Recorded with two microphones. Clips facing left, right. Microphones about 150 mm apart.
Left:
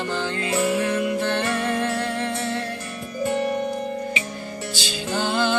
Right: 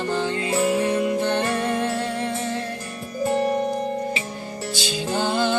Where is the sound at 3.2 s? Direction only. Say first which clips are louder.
Right 2 dB; 35° right (ahead or behind).